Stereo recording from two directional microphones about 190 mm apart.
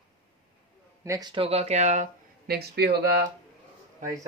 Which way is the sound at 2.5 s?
55° right (ahead or behind).